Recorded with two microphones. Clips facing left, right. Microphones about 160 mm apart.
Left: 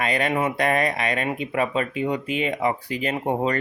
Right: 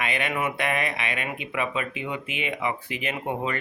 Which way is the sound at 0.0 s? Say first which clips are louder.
Left 5 dB; 35° left (ahead or behind).